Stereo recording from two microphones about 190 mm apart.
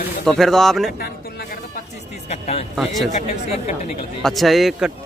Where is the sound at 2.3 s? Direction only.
35° left (ahead or behind).